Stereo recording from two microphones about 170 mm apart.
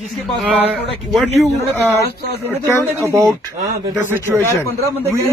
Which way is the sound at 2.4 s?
15° right (ahead or behind).